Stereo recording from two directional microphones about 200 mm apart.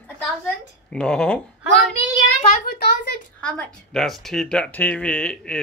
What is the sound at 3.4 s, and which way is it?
Speech, 5° left (ahead or behind).